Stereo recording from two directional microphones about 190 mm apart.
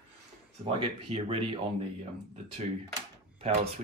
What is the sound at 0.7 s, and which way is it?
Speech, 30° right (ahead or behind).